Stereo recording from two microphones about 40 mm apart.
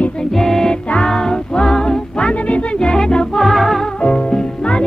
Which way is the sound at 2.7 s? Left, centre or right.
Centre.